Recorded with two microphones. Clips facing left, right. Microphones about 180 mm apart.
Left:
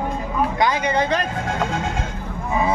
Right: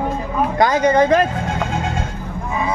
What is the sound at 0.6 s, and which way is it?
Speech, 45° right (ahead or behind).